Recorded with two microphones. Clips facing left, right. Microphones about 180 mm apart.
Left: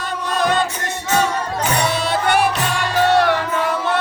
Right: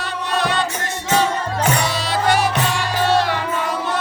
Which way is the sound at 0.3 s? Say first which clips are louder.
Left 2 dB; 45° left (ahead or behind).